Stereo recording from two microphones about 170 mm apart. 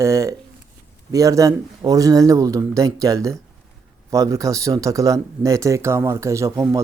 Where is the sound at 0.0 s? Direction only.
20° right (ahead or behind).